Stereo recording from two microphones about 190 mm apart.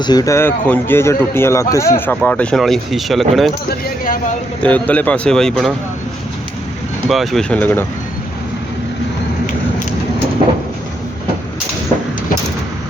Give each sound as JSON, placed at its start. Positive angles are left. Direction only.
{"t": 0.0, "sound": "speech", "side_deg": 20}
{"t": 3.7, "sound": "speech", "side_deg": 50}
{"t": 4.6, "sound": "speech", "side_deg": 10}
{"t": 7.1, "sound": "speech", "side_deg": 0}